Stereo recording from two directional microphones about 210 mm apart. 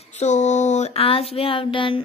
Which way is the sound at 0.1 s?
35° left (ahead or behind).